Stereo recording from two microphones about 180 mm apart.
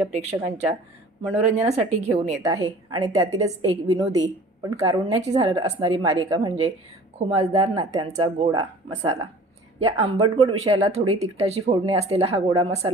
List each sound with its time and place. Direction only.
0.1 s speech: 35° right (ahead or behind)
2.4 s a woman's voice: 20° right (ahead or behind)
7.2 s speech: 30° right (ahead or behind)